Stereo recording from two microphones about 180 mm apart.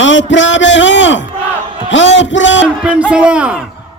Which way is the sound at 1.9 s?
90° left.